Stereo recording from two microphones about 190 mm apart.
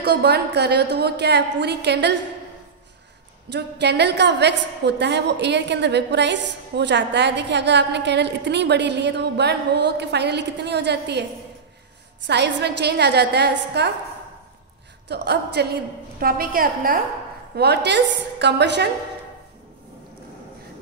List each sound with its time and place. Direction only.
0.0 s a woman's voice: 60° right (ahead or behind)
3.4 s a woman's voice: 65° right (ahead or behind)
12.3 s a woman's voice: 65° right (ahead or behind)
15.0 s a woman's voice: 60° right (ahead or behind)
17.6 s a woman's voice: 60° right (ahead or behind)